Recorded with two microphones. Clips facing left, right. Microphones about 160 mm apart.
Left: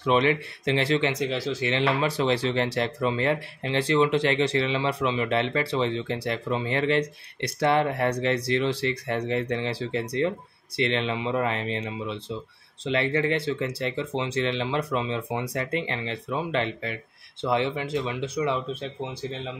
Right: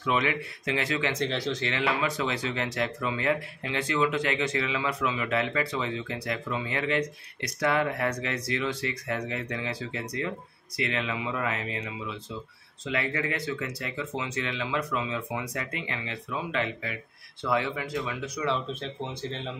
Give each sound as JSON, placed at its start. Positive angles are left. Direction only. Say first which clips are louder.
{"t": 0.0, "sound": "speech", "louder": "left 5 dB", "side_deg": 30}
{"t": 1.1, "sound": "speech", "louder": "left 2 dB", "side_deg": 5}
{"t": 1.7, "sound": "speech", "louder": "left 5 dB", "side_deg": 30}